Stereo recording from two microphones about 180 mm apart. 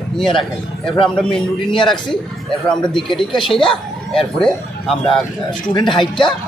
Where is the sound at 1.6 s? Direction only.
25° left (ahead or behind).